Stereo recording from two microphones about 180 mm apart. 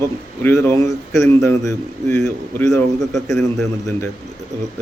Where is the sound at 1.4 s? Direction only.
15° left (ahead or behind).